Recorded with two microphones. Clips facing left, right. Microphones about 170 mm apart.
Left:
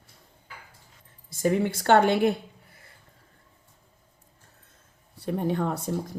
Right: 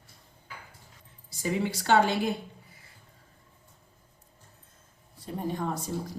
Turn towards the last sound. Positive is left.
turn(degrees=60)  # may be behind; listen again after turning